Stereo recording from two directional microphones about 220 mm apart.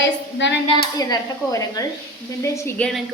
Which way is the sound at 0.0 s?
55° left (ahead or behind).